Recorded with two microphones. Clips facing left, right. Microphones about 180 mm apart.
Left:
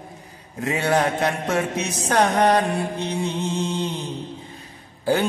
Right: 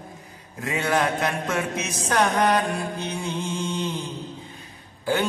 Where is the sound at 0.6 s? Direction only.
35° left (ahead or behind).